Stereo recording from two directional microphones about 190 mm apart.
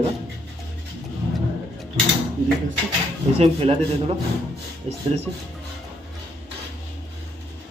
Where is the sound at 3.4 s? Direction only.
30° right (ahead or behind).